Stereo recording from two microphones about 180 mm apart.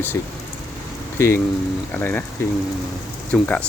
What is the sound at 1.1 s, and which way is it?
Speech, 15° left (ahead or behind).